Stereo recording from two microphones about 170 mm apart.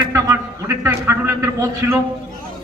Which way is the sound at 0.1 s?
20° right (ahead or behind).